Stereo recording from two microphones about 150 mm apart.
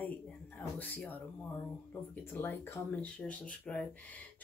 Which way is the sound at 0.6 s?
10° left (ahead or behind).